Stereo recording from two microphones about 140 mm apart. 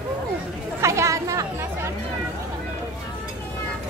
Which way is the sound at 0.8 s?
20° right (ahead or behind).